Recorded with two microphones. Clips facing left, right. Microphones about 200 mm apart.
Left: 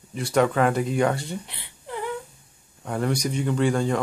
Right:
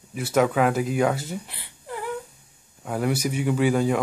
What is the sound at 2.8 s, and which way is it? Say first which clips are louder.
Speech: right 1 dB; 5° right (ahead or behind).